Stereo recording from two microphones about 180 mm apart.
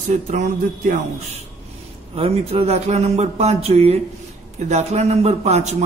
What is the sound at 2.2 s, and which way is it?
Speech, 35° right (ahead or behind).